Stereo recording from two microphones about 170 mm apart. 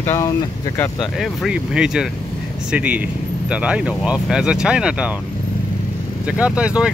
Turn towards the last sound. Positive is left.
turn(degrees=-5)  # may be behind; listen again after turning